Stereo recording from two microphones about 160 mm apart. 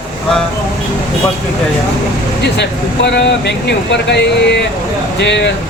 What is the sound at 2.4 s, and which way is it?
Speech, 90° left.